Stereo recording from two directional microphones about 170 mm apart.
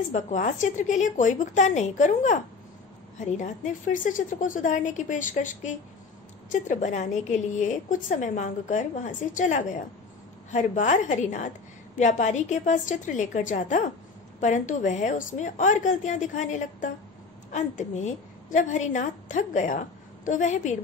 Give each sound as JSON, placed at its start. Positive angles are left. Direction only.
{"t": 0.1, "sound": "a woman's voice", "side_deg": 45}